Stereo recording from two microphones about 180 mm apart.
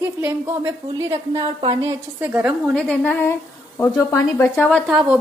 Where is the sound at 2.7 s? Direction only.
5° left (ahead or behind).